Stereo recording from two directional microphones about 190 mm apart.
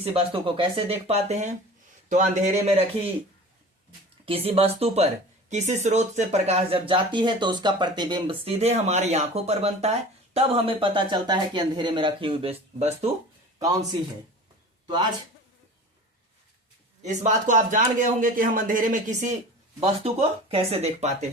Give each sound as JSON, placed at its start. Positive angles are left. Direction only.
{"t": 0.0, "sound": "speech", "side_deg": -30}
{"t": 4.3, "sound": "speech", "side_deg": -30}
{"t": 17.0, "sound": "a man's voice", "side_deg": -40}
{"t": 19.8, "sound": "speech", "side_deg": -30}